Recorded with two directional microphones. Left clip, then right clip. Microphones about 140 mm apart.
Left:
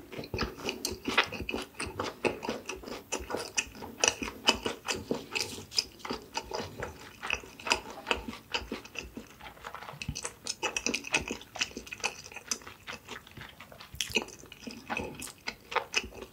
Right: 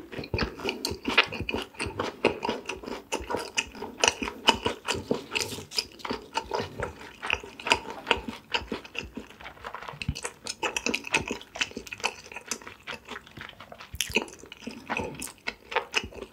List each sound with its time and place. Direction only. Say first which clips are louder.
0.1 s crunch: right 4 dB; 30° right (ahead or behind)
9.9 s a sound: right 4 dB; 30° right (ahead or behind)
13.9 s chewing: right 3 dB; 25° right (ahead or behind)